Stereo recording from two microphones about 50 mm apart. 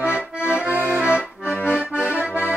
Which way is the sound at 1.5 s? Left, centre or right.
Left.